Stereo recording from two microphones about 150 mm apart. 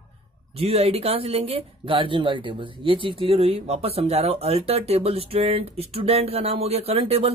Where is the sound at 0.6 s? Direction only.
40° right (ahead or behind).